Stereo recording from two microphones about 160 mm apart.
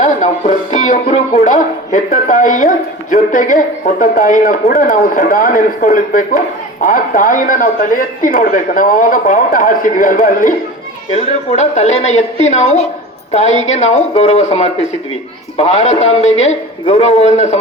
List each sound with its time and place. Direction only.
0.0 s speech: 50° left (ahead or behind)